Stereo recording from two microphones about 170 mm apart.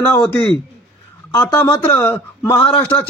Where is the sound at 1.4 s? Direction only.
15° left (ahead or behind).